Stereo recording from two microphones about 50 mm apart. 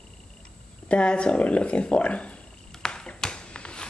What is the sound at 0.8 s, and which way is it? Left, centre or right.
Speech, left.